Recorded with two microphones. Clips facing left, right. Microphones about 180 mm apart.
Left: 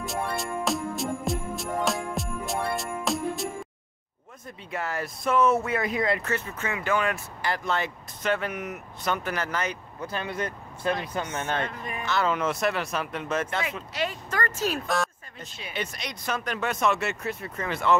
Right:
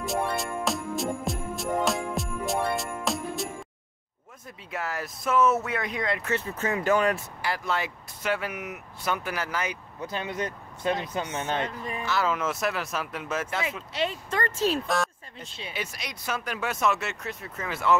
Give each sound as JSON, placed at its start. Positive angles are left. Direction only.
{"t": 0.0, "sound": "music", "side_deg": 0}
{"t": 4.6, "sound": "speech", "side_deg": 0}
{"t": 6.6, "sound": "speech", "side_deg": -40}
{"t": 7.4, "sound": "speech", "side_deg": -5}
{"t": 12.0, "sound": "speech", "side_deg": -5}
{"t": 13.9, "sound": "speech", "side_deg": -25}
{"t": 15.7, "sound": "speech", "side_deg": -5}